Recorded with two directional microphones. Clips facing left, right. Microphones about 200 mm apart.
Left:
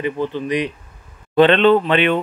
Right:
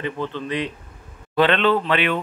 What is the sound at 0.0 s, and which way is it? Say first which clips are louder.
Speech: left 5 dB; 10° left (ahead or behind).